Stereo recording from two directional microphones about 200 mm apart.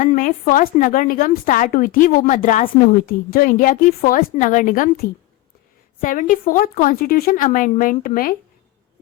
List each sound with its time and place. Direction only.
0.0 s a woman's voice: 40° left (ahead or behind)